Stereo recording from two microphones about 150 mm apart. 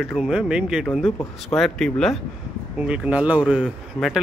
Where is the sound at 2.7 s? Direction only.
5° right (ahead or behind).